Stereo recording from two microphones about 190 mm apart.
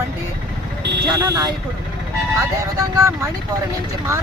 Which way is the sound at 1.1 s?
15° right (ahead or behind).